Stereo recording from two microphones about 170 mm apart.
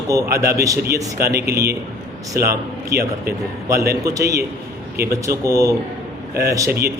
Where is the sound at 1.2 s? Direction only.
65° right (ahead or behind).